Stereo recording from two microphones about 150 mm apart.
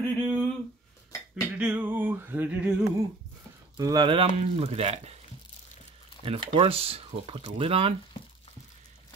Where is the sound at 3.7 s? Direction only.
25° right (ahead or behind).